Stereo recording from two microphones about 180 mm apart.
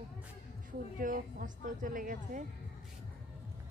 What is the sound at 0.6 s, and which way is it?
A woman's voice, 50° right (ahead or behind).